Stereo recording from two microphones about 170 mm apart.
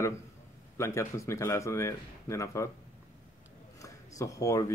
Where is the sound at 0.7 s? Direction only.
15° left (ahead or behind).